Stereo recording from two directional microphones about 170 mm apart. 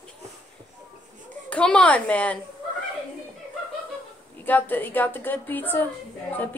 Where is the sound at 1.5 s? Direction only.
5° left (ahead or behind).